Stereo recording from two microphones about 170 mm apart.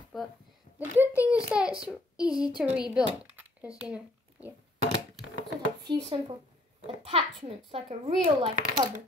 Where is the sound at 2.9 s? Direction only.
10° right (ahead or behind).